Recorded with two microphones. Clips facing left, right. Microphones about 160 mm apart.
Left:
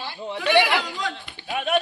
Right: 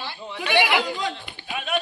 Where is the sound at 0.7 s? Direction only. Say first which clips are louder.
Right 2 dB; 10° right (ahead or behind).